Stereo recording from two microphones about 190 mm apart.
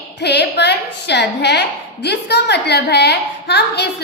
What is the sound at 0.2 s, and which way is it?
A woman's voice, 60° left (ahead or behind).